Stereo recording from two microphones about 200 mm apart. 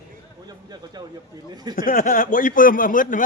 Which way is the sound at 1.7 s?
45° left (ahead or behind).